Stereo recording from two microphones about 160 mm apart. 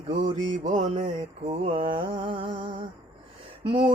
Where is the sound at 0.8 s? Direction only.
50° right (ahead or behind).